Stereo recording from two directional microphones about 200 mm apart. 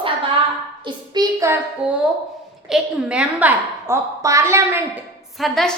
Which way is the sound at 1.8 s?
5° right (ahead or behind).